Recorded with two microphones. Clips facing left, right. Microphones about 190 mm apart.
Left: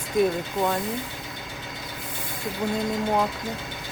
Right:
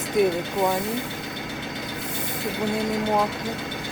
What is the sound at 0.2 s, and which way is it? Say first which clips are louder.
Speech: right 1 dB; 70° right (ahead or behind).